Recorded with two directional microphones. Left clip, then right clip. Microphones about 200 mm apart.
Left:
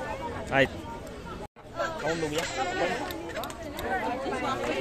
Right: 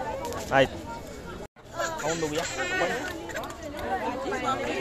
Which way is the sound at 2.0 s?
30° right (ahead or behind).